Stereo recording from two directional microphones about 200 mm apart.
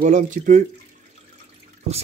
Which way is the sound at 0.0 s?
40° right (ahead or behind).